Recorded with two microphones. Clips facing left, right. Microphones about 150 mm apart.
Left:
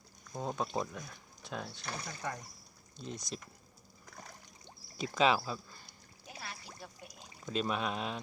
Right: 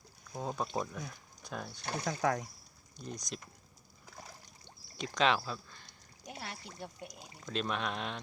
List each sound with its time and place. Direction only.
0.3 s speech: centre (ahead or behind)
1.8 s speech: 30° right (ahead or behind)
2.0 s speech: 90° right
3.0 s speech: centre (ahead or behind)
4.9 s speech: 5° left (ahead or behind)
6.2 s pour: 65° right (ahead or behind)
6.7 s speech: 60° right (ahead or behind)
7.4 s speech: 5° left (ahead or behind)